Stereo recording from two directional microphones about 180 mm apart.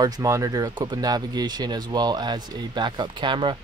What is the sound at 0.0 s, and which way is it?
Speech, 20° right (ahead or behind).